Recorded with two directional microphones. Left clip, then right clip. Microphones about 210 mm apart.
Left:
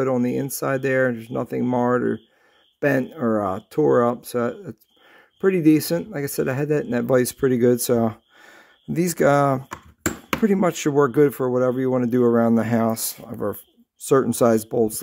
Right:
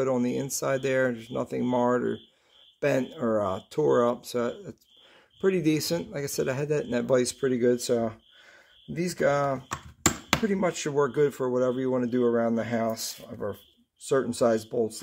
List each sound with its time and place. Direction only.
0.0 s speech: 35° left (ahead or behind); by 15.0 s 50° left (ahead or behind)